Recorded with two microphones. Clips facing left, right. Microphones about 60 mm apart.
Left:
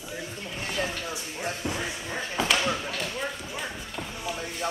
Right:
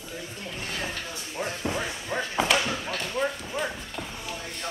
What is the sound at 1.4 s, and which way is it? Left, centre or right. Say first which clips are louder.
Music: right 1 dB; right.